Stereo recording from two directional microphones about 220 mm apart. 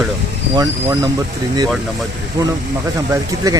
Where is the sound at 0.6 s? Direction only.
15° right (ahead or behind).